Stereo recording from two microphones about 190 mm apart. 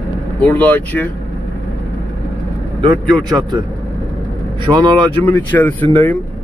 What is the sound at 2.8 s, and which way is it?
Speech, 20° right (ahead or behind).